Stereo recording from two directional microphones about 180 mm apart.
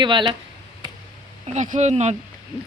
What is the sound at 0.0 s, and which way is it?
Speech, 25° right (ahead or behind).